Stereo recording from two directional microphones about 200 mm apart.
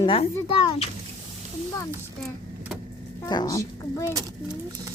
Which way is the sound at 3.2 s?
20° left (ahead or behind).